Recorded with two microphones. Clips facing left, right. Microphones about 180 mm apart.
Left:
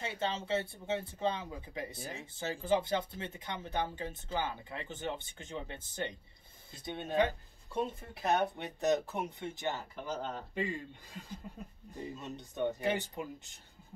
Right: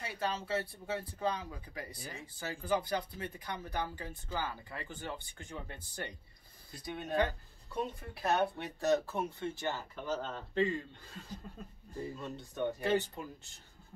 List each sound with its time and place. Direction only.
0.0 s speech: 25° left (ahead or behind)